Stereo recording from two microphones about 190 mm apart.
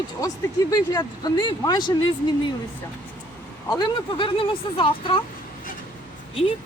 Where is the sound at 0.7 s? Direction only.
20° left (ahead or behind).